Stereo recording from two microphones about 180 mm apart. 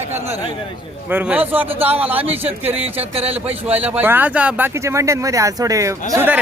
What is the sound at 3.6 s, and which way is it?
Speech, 10° right (ahead or behind).